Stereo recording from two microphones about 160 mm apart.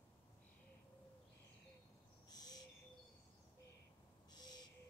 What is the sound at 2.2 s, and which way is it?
Owl, 25° left (ahead or behind).